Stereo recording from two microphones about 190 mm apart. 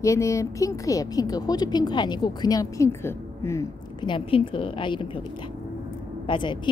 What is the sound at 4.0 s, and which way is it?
A woman's voice, 25° left (ahead or behind).